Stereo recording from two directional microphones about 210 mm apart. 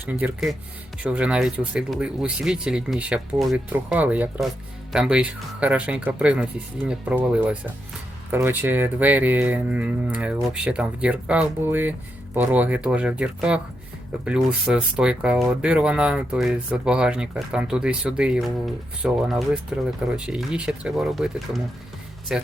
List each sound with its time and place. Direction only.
0.0 s speech: 10° right (ahead or behind)